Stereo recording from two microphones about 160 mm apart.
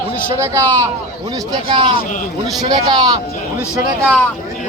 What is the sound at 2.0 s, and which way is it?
Speech, 55° left (ahead or behind).